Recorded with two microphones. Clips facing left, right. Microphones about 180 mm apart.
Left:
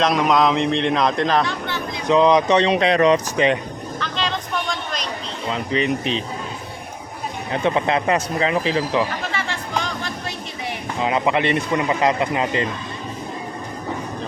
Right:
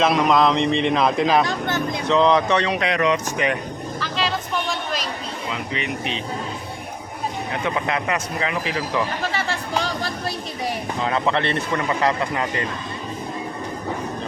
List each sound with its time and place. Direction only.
0.0 s a man's voice: centre (ahead or behind)
1.5 s a sound: 45° right (ahead or behind)
2.0 s speech: 15° left (ahead or behind)
4.0 s a sound: 5° right (ahead or behind)
5.7 s speech: 35° left (ahead or behind)
7.6 s speech: 25° left (ahead or behind)
9.3 s music: 35° right (ahead or behind)
11.0 s speech: 15° left (ahead or behind)